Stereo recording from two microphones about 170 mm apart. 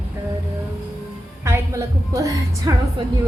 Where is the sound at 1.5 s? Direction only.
20° right (ahead or behind).